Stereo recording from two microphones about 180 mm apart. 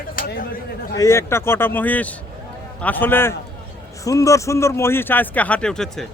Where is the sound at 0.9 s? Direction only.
15° left (ahead or behind).